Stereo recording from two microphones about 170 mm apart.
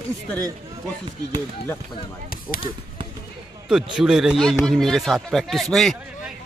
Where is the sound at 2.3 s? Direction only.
55° left (ahead or behind).